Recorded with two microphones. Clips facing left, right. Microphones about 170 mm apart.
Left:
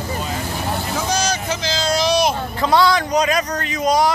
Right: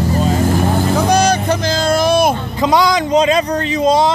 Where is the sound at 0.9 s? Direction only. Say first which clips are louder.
Right 8 dB; 60° right (ahead or behind).